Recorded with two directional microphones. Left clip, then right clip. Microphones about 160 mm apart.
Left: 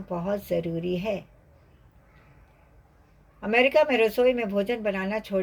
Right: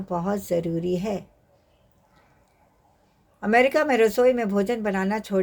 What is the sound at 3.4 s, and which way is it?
Speech, 45° right (ahead or behind).